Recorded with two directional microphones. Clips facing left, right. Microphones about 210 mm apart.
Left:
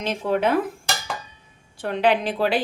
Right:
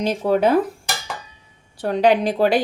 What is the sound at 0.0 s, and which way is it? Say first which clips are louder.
Speech: right 4 dB; 40° right (ahead or behind).